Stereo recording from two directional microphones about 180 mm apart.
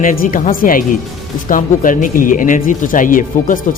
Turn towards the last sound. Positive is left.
turn(degrees=45)  # may be behind; listen again after turning